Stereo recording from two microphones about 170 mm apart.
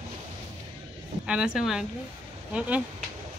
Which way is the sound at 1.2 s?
5° right (ahead or behind).